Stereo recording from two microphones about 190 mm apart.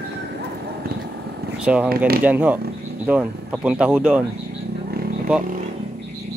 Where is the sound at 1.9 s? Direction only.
55° right (ahead or behind).